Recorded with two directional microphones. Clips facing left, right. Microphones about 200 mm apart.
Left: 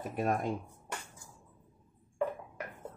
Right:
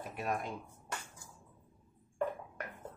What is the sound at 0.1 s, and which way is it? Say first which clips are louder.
Speech: left 6 dB; 50° left (ahead or behind).